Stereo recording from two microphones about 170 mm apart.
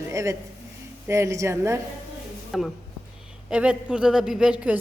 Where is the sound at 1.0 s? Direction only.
15° right (ahead or behind).